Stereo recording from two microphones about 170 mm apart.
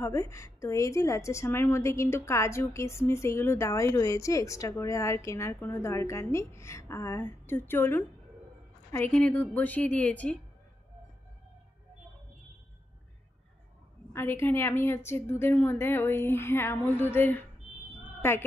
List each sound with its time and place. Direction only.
0.0 s a woman's voice: 20° left (ahead or behind)
14.1 s a woman's voice: 15° left (ahead or behind)